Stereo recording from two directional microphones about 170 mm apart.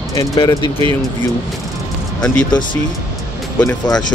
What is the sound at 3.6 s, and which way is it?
Speech, 20° left (ahead or behind).